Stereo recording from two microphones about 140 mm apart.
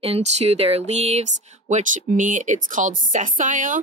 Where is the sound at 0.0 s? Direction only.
45° right (ahead or behind).